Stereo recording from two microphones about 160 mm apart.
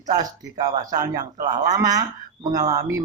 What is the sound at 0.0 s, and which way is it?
Speech, 25° right (ahead or behind).